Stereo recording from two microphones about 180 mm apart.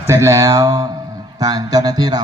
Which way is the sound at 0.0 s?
15° right (ahead or behind).